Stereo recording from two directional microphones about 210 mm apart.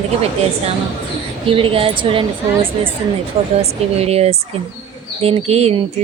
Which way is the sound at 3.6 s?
30° right (ahead or behind).